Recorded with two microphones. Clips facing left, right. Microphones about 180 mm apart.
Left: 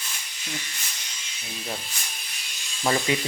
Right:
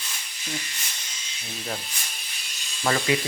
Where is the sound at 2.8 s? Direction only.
20° left (ahead or behind).